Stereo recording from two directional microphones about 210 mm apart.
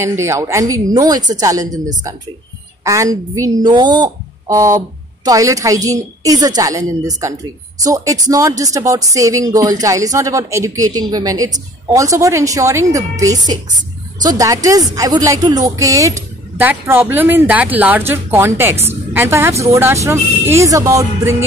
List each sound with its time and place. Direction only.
0.0 s speech: 15° right (ahead or behind)
2.8 s speech: 15° right (ahead or behind)